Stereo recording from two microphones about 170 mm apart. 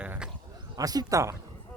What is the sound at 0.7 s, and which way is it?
Speech, 20° right (ahead or behind).